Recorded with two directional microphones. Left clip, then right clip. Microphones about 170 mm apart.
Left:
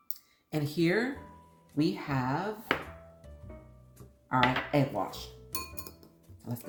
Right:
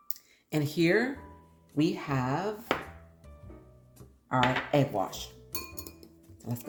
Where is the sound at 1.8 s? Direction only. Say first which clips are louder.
Right 1 dB; 45° right (ahead or behind).